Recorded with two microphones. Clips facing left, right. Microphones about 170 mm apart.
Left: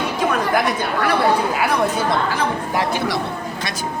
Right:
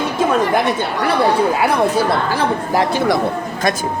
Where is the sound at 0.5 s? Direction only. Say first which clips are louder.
Right 2 dB; 25° right (ahead or behind).